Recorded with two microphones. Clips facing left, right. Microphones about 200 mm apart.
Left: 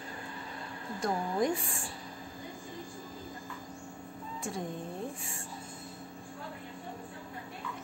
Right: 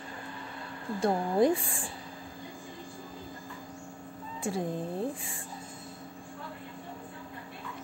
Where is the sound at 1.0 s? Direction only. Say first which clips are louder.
Right 5 dB; 30° right (ahead or behind).